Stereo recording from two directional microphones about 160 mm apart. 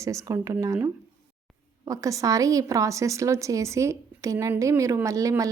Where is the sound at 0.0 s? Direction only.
20° right (ahead or behind).